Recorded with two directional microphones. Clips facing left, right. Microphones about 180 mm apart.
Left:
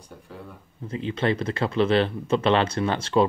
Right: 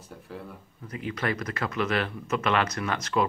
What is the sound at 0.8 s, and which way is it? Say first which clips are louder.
Speech: left 6 dB; 25° left (ahead or behind).